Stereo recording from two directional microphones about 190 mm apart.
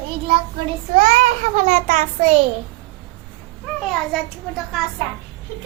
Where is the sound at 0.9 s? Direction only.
40° right (ahead or behind).